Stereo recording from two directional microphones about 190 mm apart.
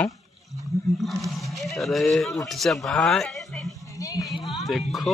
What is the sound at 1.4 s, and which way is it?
Speech, centre (ahead or behind).